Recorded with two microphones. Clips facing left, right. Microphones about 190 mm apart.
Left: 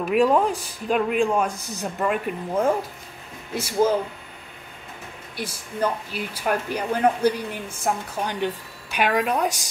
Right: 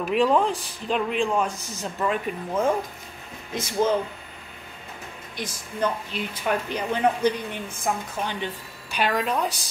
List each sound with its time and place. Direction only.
0.1 s speech: 10° left (ahead or behind)
5.4 s speech: 10° left (ahead or behind)